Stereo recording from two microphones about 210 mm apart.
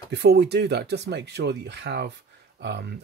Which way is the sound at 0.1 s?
50° right (ahead or behind).